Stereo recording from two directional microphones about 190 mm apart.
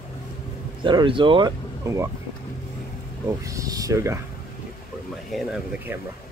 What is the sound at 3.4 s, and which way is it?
Speech, 15° right (ahead or behind).